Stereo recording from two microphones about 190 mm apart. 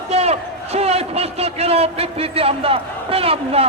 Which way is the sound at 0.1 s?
35° right (ahead or behind).